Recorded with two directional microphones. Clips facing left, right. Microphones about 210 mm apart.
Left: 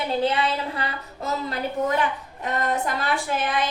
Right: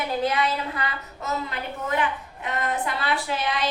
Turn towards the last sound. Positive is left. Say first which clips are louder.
# left 2 dB
turn(degrees=50)  # may be behind; listen again after turning